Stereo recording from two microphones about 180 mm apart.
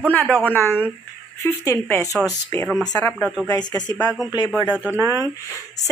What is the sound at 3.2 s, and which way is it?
Speech, centre (ahead or behind).